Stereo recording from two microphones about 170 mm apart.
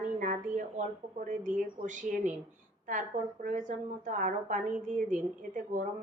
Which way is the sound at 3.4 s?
50° right (ahead or behind).